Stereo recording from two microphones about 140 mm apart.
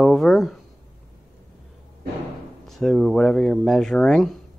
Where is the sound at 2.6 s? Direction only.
Centre (ahead or behind).